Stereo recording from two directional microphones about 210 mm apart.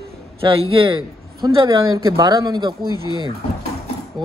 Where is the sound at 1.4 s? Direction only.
20° right (ahead or behind).